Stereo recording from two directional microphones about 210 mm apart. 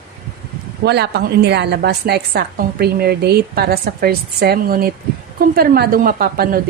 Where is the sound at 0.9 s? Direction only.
50° right (ahead or behind).